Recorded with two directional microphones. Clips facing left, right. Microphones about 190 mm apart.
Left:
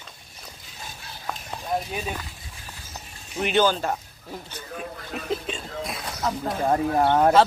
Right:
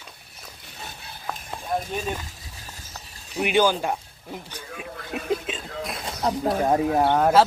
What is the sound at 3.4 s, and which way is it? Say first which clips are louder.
Speech: right 1 dB; 10° right (ahead or behind).